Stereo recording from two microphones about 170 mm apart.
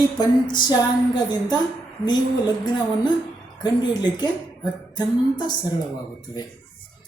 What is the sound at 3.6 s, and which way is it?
Speech, 25° left (ahead or behind).